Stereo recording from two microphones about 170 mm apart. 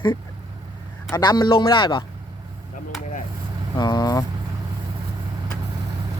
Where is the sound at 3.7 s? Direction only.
25° left (ahead or behind).